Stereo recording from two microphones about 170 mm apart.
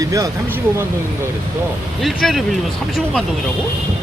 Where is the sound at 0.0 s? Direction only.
20° right (ahead or behind).